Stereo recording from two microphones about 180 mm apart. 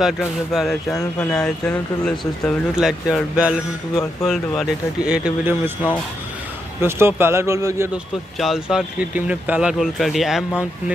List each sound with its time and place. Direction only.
0.0 s speech: centre (ahead or behind)
0.9 s speech: 20° left (ahead or behind)
1.4 s speech: 5° left (ahead or behind)
6.8 s speech: 15° right (ahead or behind)
7.9 s speech: centre (ahead or behind)